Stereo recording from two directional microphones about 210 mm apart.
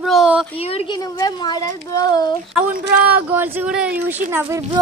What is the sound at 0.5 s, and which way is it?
Speech, 30° left (ahead or behind).